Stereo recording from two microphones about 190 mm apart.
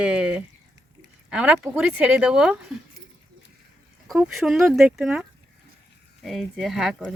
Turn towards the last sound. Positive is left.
turn(degrees=0)  # may be behind; listen again after turning